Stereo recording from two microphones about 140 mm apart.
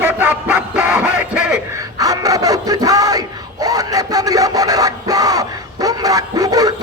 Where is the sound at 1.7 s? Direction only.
25° right (ahead or behind).